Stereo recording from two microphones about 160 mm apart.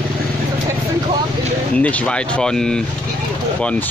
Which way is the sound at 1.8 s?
10° left (ahead or behind).